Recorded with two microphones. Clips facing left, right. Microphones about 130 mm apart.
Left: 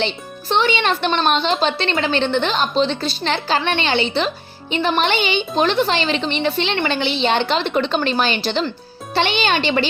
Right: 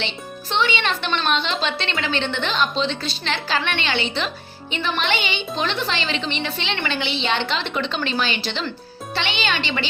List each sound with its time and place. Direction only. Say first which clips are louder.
0.0 s a woman's voice: left 6 dB; 40° left (ahead or behind)